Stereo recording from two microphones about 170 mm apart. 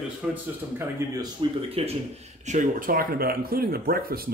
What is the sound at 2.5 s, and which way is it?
Speech, 50° right (ahead or behind).